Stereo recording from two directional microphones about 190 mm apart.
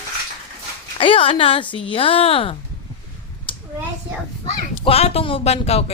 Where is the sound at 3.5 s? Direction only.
25° left (ahead or behind).